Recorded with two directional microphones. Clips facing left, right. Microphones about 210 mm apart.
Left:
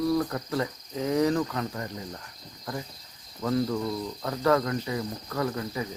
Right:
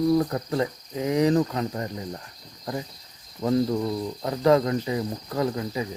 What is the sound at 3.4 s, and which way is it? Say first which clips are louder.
Cricket: right 4 dB; 25° right (ahead or behind).